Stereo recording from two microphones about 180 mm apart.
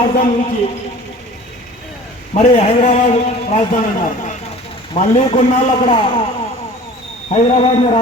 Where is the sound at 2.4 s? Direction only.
35° left (ahead or behind).